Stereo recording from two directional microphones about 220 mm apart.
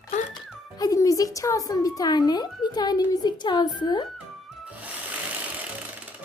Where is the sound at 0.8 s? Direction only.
15° left (ahead or behind).